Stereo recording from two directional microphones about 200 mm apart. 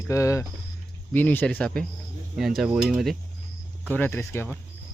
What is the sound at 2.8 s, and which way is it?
Speech, centre (ahead or behind).